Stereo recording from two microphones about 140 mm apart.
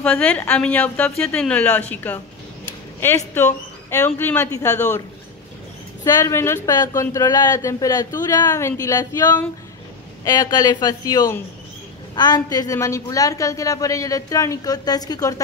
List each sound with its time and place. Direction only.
0.0 s speech: 10° left (ahead or behind)
3.3 s speech: 15° left (ahead or behind)
6.0 s a woman's voice: 20° left (ahead or behind)